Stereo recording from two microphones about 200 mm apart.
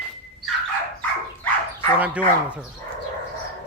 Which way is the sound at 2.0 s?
5° right (ahead or behind).